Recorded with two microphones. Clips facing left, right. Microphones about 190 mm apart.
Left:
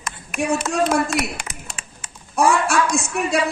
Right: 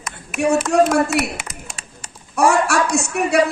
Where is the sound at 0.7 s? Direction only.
65° right (ahead or behind).